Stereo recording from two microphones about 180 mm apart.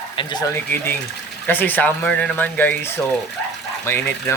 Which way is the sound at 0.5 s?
10° left (ahead or behind).